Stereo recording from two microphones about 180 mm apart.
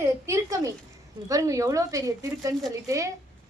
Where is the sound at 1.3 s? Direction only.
20° right (ahead or behind).